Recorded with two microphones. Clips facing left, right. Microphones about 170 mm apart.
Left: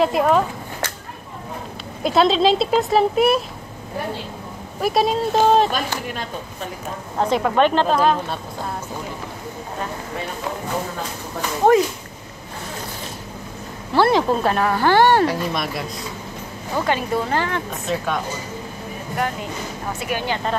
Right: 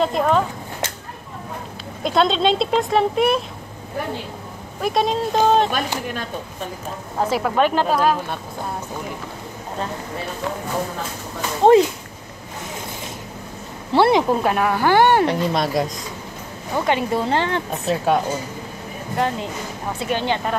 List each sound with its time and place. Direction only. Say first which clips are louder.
0.0 s speech: left 2 dB; 5° left (ahead or behind)
2.0 s speech: left 2 dB; 5° left (ahead or behind)
4.8 s speech: left 1 dB; 5° left (ahead or behind)
7.2 s speech: left 1 dB; 5° right (ahead or behind)
11.6 s speech: right 3 dB; 25° right (ahead or behind)
13.9 s speech: right 1 dB; 20° right (ahead or behind)
15.5 s a woman's voice: right 5 dB; 30° right (ahead or behind)
20.1 s speech: right 3 dB; 25° right (ahead or behind)